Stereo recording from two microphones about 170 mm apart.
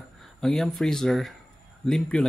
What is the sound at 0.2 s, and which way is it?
Speech, 5° left (ahead or behind).